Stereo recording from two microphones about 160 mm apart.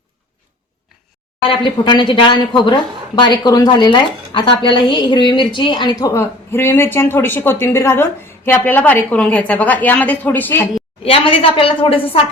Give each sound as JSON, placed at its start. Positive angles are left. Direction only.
{"t": 1.5, "sound": "a woman's voice", "side_deg": 30}
{"t": 11.0, "sound": "a woman's voice", "side_deg": 35}